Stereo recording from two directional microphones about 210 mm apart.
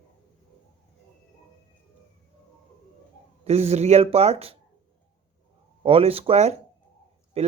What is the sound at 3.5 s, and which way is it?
Speech, 30° right (ahead or behind).